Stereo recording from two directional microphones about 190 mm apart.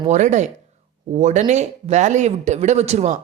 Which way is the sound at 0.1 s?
40° right (ahead or behind).